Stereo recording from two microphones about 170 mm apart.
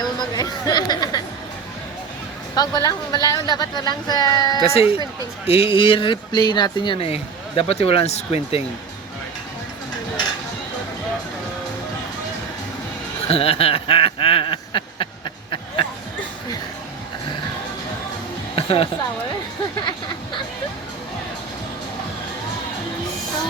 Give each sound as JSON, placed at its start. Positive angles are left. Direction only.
{"t": 0.3, "sound": "a woman's voice", "side_deg": 25}
{"t": 2.6, "sound": "a woman's voice", "side_deg": 25}
{"t": 4.6, "sound": "speech", "side_deg": 35}
{"t": 13.2, "sound": "a sound", "side_deg": 35}
{"t": 18.5, "sound": "music", "side_deg": 35}